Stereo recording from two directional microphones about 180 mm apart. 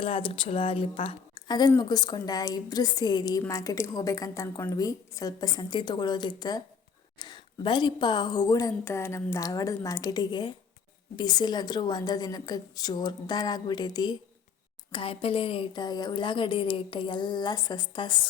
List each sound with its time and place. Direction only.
0.0 s a woman's voice: 30° left (ahead or behind)